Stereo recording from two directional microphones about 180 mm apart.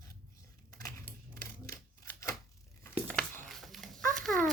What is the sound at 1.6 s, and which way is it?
Scissors, 20° left (ahead or behind).